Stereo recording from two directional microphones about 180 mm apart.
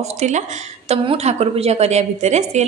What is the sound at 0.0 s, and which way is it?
A woman's voice, 40° right (ahead or behind).